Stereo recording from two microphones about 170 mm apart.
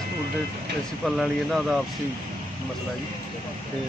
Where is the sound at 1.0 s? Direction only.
Centre (ahead or behind).